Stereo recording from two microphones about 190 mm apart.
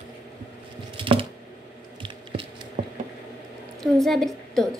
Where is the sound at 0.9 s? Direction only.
25° right (ahead or behind).